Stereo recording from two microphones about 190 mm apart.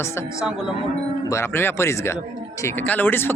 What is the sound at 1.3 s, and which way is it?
Speech, 15° left (ahead or behind).